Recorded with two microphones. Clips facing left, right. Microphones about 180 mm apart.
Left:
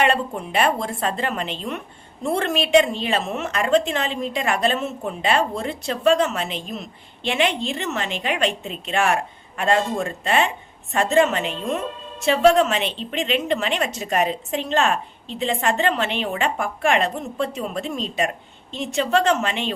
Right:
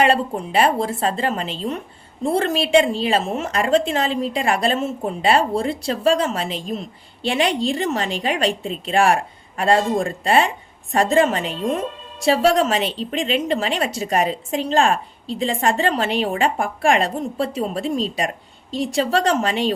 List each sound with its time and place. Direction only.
0.0 s a woman's voice: 30° right (ahead or behind)